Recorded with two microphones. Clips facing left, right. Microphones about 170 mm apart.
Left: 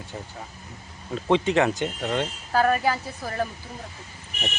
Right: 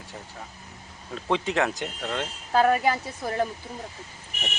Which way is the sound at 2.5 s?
20° right (ahead or behind).